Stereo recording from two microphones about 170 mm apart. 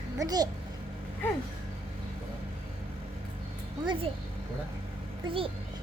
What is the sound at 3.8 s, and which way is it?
Speech, 30° right (ahead or behind).